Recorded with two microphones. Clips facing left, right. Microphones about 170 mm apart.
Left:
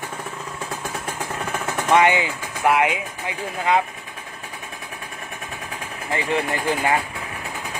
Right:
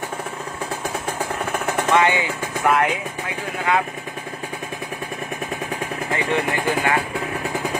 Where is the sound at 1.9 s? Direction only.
20° left (ahead or behind).